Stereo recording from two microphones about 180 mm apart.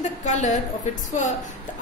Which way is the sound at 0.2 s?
40° left (ahead or behind).